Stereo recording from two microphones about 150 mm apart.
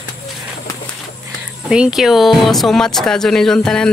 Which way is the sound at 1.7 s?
5° right (ahead or behind).